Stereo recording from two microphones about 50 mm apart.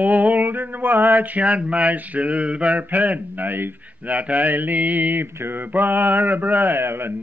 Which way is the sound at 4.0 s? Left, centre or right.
Right.